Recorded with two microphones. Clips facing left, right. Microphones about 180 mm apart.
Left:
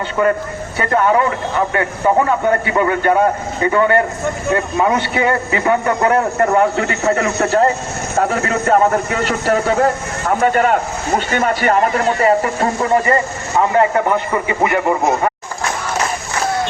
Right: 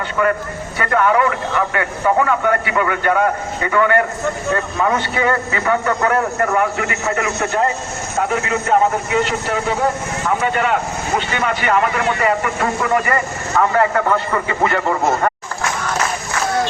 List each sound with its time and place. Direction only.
0.8 s a man's voice: 30° left (ahead or behind)